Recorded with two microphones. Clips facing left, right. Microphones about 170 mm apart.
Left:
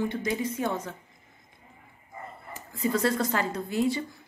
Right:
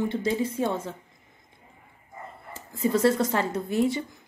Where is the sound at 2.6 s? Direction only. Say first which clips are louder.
Right 3 dB; 25° right (ahead or behind).